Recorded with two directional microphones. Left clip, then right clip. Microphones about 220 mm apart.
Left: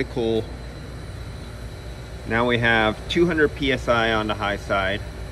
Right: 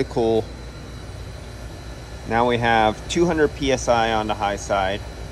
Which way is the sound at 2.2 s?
10° right (ahead or behind).